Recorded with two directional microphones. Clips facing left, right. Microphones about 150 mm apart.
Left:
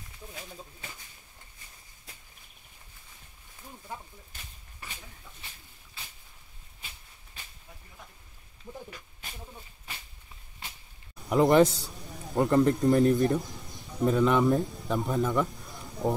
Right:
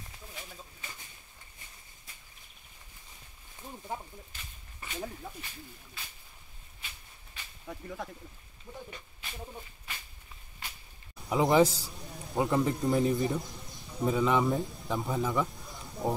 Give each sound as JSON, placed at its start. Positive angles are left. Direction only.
{"t": 4.8, "sound": "a sound", "side_deg": 0}
{"t": 5.2, "sound": "speech", "side_deg": -55}
{"t": 7.6, "sound": "speech", "side_deg": -90}
{"t": 8.7, "sound": "speech", "side_deg": 0}
{"t": 11.2, "sound": "a man's voice", "side_deg": 0}